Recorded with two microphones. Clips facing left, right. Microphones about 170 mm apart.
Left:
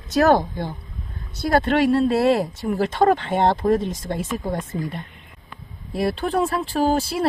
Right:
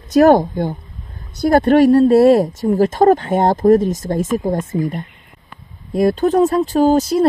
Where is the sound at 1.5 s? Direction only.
45° right (ahead or behind).